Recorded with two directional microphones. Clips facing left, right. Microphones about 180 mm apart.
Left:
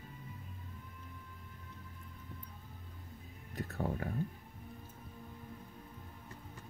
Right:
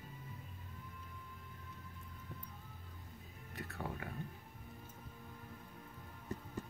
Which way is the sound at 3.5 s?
40° left (ahead or behind).